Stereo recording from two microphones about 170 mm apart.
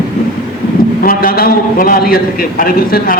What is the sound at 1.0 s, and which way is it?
A man's voice, 60° left (ahead or behind).